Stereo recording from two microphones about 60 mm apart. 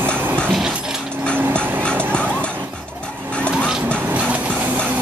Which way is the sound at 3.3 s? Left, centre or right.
Centre.